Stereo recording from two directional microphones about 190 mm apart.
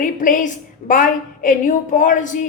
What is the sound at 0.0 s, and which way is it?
A woman's voice, 45° left (ahead or behind).